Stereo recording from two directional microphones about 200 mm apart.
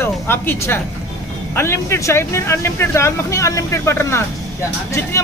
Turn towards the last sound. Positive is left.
turn(degrees=15)  # may be behind; listen again after turning